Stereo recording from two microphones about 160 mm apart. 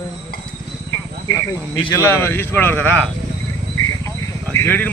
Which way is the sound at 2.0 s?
15° left (ahead or behind).